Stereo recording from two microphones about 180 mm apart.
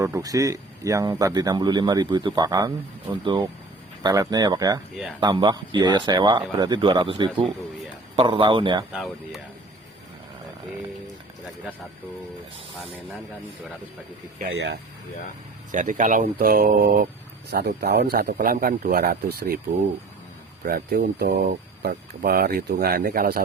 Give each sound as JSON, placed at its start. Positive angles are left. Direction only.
{"t": 0.0, "sound": "speech", "side_deg": -20}
{"t": 8.9, "sound": "speech", "side_deg": 0}
{"t": 14.4, "sound": "speech", "side_deg": -65}
{"t": 15.7, "sound": "speech", "side_deg": -45}
{"t": 20.7, "sound": "speech", "side_deg": -55}